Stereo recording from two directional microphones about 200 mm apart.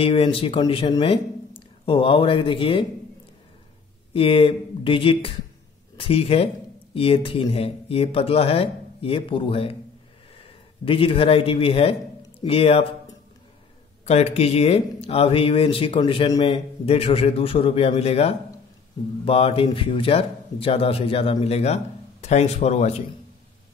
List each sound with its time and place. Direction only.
0.0 s speech: 30° left (ahead or behind)
4.1 s a man's voice: 25° left (ahead or behind)
14.0 s speech: 30° left (ahead or behind)